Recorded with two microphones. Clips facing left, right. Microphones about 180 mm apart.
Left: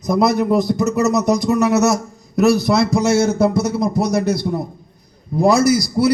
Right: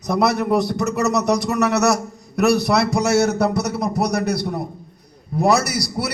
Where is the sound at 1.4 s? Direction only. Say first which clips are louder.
Left 3 dB; 70° right (ahead or behind).